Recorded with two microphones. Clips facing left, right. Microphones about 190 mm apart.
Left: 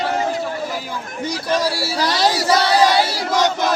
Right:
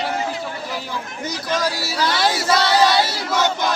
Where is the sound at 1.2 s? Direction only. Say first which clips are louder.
Left 3 dB; 30° left (ahead or behind).